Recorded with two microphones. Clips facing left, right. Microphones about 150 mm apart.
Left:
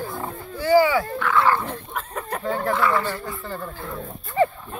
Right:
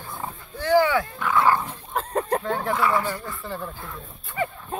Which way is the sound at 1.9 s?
35° right (ahead or behind).